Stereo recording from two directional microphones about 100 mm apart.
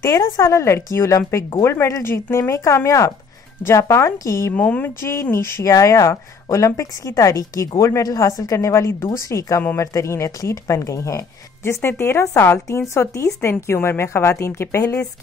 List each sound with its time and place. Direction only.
0.0 s a woman's voice: 35° left (ahead or behind)
4.6 s speech: 15° left (ahead or behind)
5.0 s a woman's voice: 25° left (ahead or behind)